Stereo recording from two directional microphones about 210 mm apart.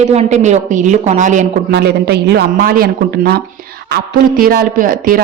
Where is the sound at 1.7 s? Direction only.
50° right (ahead or behind).